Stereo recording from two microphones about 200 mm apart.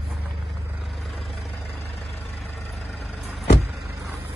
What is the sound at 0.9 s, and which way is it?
Vehicle, centre (ahead or behind).